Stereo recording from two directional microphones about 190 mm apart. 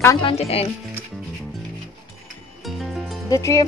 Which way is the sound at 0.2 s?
30° left (ahead or behind).